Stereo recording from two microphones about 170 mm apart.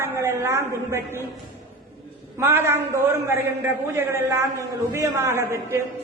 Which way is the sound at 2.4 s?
15° right (ahead or behind).